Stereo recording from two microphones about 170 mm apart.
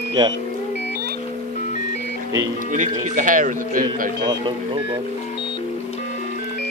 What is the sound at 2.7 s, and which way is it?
Speech, 50° right (ahead or behind).